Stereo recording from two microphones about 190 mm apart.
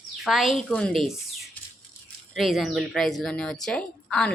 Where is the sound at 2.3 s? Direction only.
Centre (ahead or behind).